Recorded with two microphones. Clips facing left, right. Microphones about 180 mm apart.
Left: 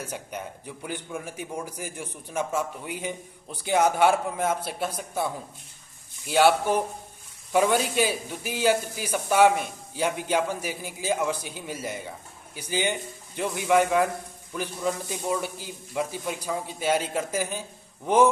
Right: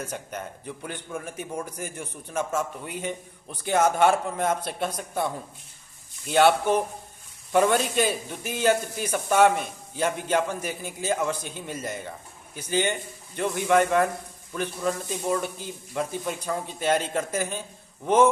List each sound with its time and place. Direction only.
0.0 s a man's voice: 10° left (ahead or behind)